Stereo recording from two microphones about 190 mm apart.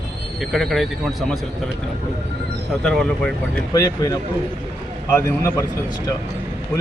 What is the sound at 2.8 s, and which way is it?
Speech, 5° left (ahead or behind).